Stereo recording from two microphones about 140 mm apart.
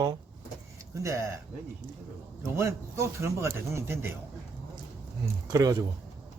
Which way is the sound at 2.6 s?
20° right (ahead or behind).